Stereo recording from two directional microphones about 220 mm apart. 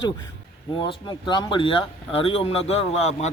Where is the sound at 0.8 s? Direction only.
20° left (ahead or behind).